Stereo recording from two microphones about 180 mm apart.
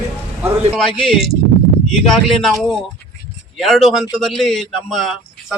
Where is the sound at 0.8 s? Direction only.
Centre (ahead or behind).